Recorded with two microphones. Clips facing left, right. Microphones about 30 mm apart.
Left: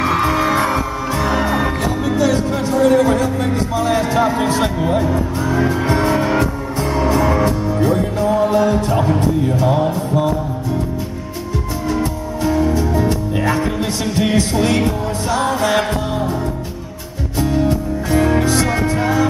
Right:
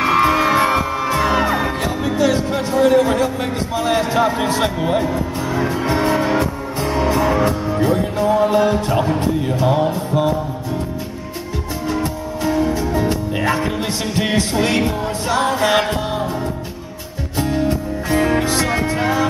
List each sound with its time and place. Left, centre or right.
0.0 s music: centre
3.4 s a man's voice: centre
5.0 s music: centre
11.9 s music: centre
17.4 s music: centre